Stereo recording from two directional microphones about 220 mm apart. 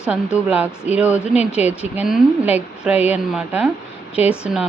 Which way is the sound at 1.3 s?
30° left (ahead or behind).